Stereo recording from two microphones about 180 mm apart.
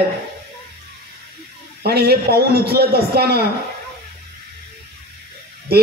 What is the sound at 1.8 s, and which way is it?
A man's voice, 60° right (ahead or behind).